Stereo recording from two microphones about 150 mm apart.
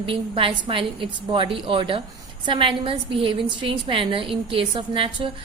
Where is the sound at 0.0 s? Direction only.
35° right (ahead or behind).